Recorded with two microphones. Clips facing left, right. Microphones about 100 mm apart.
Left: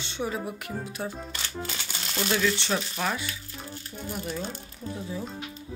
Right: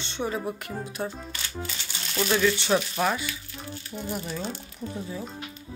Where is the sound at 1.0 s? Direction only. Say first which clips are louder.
Right 1 dB; 5° right (ahead or behind).